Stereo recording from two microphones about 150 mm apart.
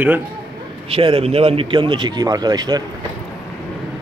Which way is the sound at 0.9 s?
40° right (ahead or behind).